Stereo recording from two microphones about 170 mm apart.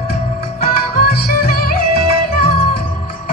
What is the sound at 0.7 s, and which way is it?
Music, 65° left (ahead or behind).